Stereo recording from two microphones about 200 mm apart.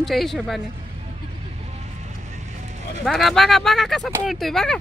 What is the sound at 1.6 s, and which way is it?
Vehicle, 35° right (ahead or behind).